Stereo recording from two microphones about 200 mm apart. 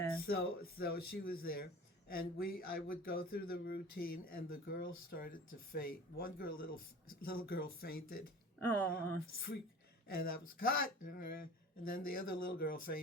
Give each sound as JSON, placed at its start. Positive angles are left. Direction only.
{"t": 0.3, "sound": "speech", "side_deg": 50}
{"t": 8.6, "sound": "speech", "side_deg": 5}
{"t": 10.1, "sound": "speech", "side_deg": 50}